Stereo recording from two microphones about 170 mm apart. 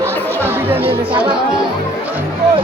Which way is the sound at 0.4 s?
10° right (ahead or behind).